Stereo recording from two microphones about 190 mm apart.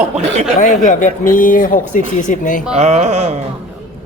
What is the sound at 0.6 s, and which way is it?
Speech, 40° left (ahead or behind).